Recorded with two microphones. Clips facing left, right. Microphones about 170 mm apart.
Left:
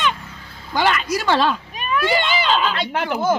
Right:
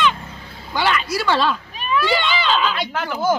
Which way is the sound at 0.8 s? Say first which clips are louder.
Left 1 dB; 45° left (ahead or behind).